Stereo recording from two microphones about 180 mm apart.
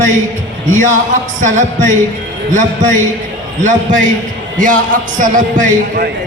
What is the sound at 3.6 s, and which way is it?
Speech, 45° right (ahead or behind).